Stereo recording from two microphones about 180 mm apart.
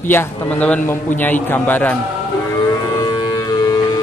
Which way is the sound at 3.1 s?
20° left (ahead or behind).